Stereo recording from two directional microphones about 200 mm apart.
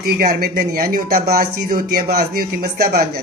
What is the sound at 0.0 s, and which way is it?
Speech, 50° right (ahead or behind).